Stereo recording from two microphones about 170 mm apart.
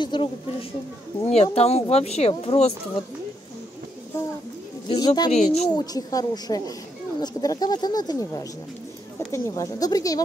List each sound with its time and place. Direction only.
0.0 s speech: 30° left (ahead or behind)
4.8 s speech: 25° left (ahead or behind)
5.3 s speech: 40° left (ahead or behind)
5.7 s speech: 20° left (ahead or behind)